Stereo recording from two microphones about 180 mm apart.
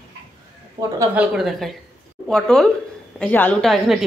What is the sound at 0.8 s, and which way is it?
Speech, 15° right (ahead or behind).